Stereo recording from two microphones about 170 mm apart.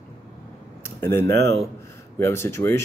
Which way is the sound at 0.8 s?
15° left (ahead or behind).